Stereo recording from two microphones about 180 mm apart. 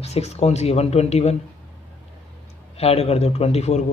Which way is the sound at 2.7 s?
35° left (ahead or behind).